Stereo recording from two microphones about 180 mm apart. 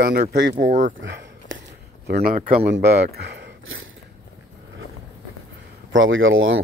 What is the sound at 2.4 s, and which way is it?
Speech, 40° right (ahead or behind).